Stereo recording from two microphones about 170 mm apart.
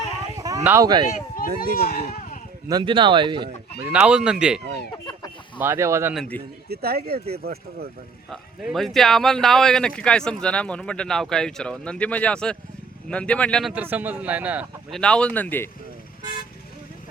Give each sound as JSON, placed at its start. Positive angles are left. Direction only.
{"t": 0.3, "sound": "a sound", "side_deg": -20}
{"t": 0.6, "sound": "speech", "side_deg": -15}
{"t": 1.0, "sound": "speech", "side_deg": 60}
{"t": 2.6, "sound": "speech", "side_deg": -25}
{"t": 3.9, "sound": "speech", "side_deg": -5}
{"t": 6.1, "sound": "speech", "side_deg": 10}
{"t": 6.7, "sound": "speech", "side_deg": -65}
{"t": 8.3, "sound": "speech", "side_deg": 0}
{"t": 13.7, "sound": "speech", "side_deg": -10}
{"t": 14.9, "sound": "speech", "side_deg": 5}